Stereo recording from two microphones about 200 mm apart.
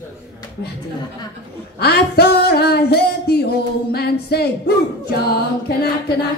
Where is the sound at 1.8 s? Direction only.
55° left (ahead or behind).